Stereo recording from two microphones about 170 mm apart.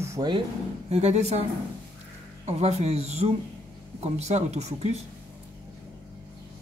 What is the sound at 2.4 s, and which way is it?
A woman's voice, 40° right (ahead or behind).